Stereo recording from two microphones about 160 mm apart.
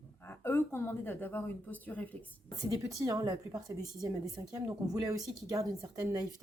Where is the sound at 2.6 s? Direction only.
20° right (ahead or behind).